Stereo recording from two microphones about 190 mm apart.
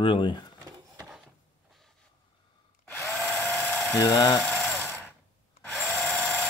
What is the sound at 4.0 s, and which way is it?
Speech, 20° left (ahead or behind).